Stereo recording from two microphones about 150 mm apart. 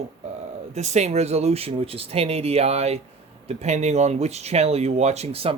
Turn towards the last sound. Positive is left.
turn(degrees=-40)  # may be behind; listen again after turning